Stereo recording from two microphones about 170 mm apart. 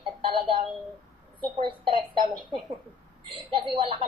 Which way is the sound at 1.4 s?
30° right (ahead or behind).